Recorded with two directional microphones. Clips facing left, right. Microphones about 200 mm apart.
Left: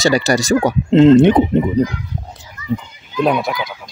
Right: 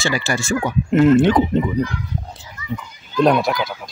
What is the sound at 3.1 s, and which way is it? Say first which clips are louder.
Speech: right 1 dB; 5° left (ahead or behind).